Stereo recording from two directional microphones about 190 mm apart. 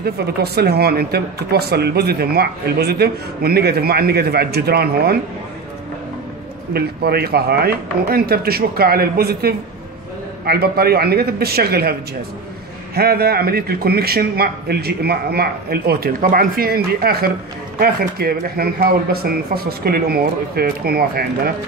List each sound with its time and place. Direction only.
0.0 s speech: 55° right (ahead or behind)
6.7 s speech: 55° right (ahead or behind)